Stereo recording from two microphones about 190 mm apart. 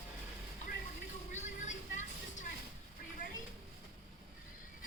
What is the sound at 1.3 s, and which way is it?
Vehicle, 40° left (ahead or behind).